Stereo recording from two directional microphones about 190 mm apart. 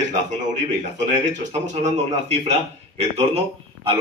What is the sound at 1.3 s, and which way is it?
A man's voice, 35° right (ahead or behind).